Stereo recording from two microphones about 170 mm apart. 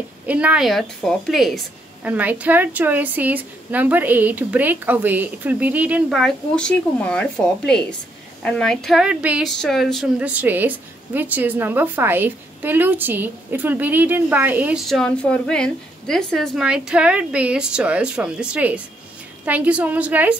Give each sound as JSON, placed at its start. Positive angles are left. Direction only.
{"t": 0.3, "sound": "a woman's voice", "side_deg": -10}
{"t": 14.9, "sound": "a woman's voice", "side_deg": 5}